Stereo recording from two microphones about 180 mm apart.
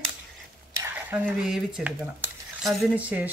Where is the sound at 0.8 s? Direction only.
10° right (ahead or behind).